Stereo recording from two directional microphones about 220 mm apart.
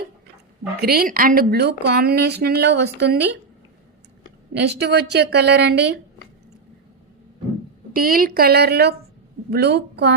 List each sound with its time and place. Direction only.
0.8 s speech: 45° right (ahead or behind)
4.5 s speech: 50° right (ahead or behind)
7.9 s speech: 40° right (ahead or behind)